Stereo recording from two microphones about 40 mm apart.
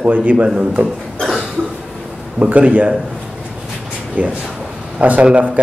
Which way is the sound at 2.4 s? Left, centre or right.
Right.